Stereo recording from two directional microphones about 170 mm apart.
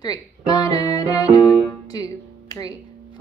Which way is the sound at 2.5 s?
20° left (ahead or behind).